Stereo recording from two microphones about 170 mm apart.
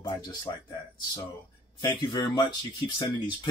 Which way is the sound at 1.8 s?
25° left (ahead or behind).